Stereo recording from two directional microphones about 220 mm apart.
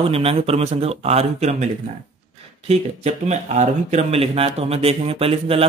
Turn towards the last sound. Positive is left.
turn(degrees=-25)  # may be behind; listen again after turning